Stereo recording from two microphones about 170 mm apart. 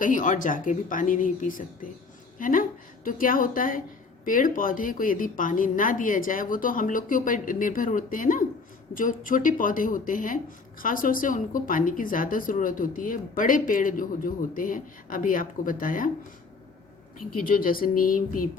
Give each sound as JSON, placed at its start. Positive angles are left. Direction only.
{"t": 0.0, "sound": "a woman's voice", "side_deg": 50}
{"t": 17.2, "sound": "a woman's voice", "side_deg": 55}